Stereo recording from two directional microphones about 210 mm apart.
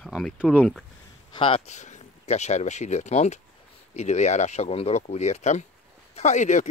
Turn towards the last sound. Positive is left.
turn(degrees=35)  # may be behind; listen again after turning